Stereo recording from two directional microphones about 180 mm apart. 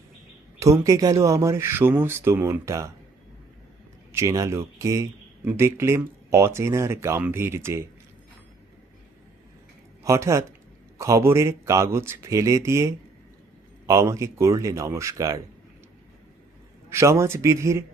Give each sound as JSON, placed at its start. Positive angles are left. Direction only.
{"t": 0.6, "sound": "speech", "side_deg": -15}
{"t": 4.1, "sound": "speech", "side_deg": -15}
{"t": 10.0, "sound": "speech", "side_deg": -15}
{"t": 16.9, "sound": "speech", "side_deg": -15}